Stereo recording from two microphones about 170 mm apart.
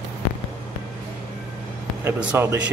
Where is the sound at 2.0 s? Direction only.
10° right (ahead or behind).